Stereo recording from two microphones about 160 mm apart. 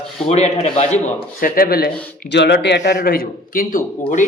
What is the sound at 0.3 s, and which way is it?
Speech, 45° left (ahead or behind).